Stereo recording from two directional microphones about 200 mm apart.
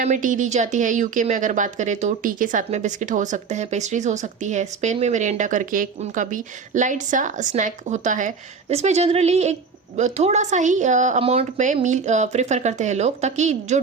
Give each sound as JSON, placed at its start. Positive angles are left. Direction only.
{"t": 0.0, "sound": "a woman's voice", "side_deg": -40}